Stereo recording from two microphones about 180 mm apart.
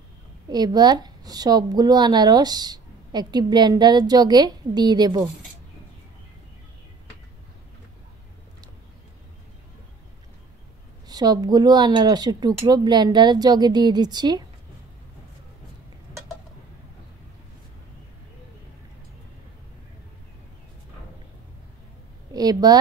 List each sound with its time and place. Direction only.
0.5 s speech: 20° right (ahead or behind)
11.1 s speech: 20° right (ahead or behind)
22.3 s a sound: 20° right (ahead or behind)